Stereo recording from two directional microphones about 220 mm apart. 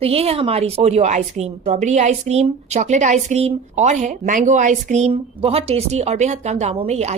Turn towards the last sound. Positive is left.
turn(degrees=-30)  # may be behind; listen again after turning